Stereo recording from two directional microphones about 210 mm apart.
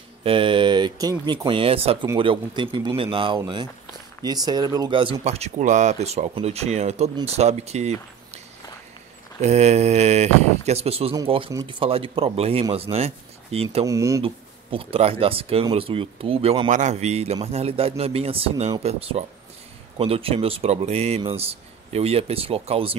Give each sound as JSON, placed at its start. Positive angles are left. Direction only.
{"t": 0.2, "sound": "speech", "side_deg": -25}
{"t": 9.4, "sound": "speech", "side_deg": -30}
{"t": 13.8, "sound": "speech", "side_deg": -15}
{"t": 14.2, "sound": "speech", "side_deg": -25}